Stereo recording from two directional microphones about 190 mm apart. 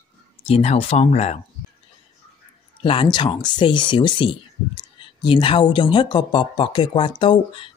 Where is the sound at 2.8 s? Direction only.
30° left (ahead or behind).